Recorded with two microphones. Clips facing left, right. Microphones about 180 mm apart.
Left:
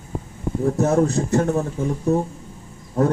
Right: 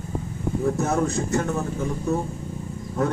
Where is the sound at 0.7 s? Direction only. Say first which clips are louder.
Left 5 dB; 35° left (ahead or behind).